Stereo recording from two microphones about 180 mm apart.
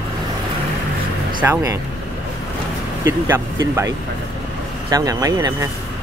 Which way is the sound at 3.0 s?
15° right (ahead or behind).